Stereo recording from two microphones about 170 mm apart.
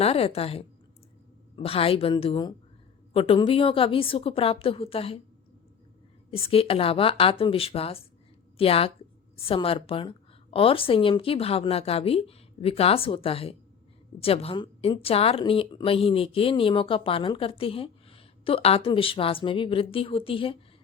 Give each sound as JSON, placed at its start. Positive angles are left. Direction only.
{"t": 0.0, "sound": "a woman's voice", "side_deg": 35}
{"t": 6.3, "sound": "a woman's voice", "side_deg": 35}